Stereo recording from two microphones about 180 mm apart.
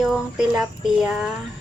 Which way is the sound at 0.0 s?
5° right (ahead or behind).